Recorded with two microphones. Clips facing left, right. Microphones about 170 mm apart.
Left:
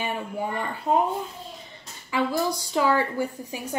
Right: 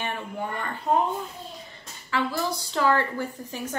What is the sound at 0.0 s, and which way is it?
Speech, 10° left (ahead or behind).